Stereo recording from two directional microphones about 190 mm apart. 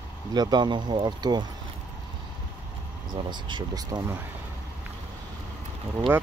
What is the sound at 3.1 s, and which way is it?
Speech, 25° right (ahead or behind).